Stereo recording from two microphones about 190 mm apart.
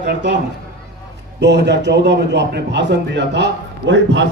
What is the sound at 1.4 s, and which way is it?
A man's voice, 65° right (ahead or behind).